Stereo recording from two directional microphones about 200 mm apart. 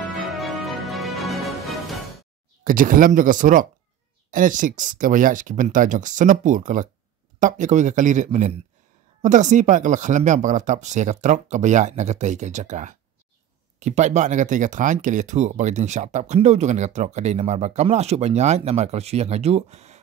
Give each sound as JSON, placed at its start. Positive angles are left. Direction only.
{"t": 0.0, "sound": "music", "side_deg": 0}
{"t": 2.6, "sound": "speech", "side_deg": -45}